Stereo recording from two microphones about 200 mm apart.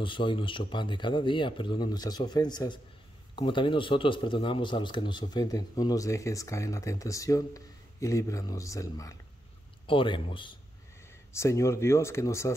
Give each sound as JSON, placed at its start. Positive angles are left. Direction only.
{"t": 0.0, "sound": "a man's voice", "side_deg": 25}